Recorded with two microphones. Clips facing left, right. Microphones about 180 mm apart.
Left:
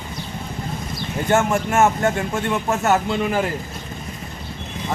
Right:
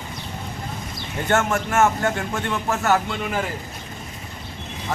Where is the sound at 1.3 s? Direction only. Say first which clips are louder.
Left 2 dB; 15° left (ahead or behind).